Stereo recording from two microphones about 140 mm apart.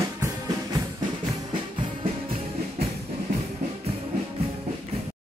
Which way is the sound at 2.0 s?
40° right (ahead or behind).